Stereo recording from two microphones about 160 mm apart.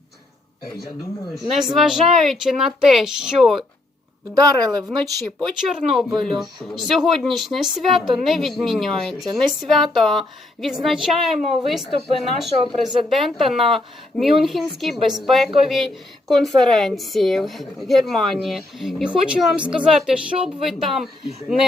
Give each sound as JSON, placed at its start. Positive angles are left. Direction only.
{"t": 1.5, "sound": "a woman's voice", "side_deg": 0}
{"t": 4.4, "sound": "a woman's voice", "side_deg": -25}
{"t": 5.5, "sound": "a woman's voice", "side_deg": 0}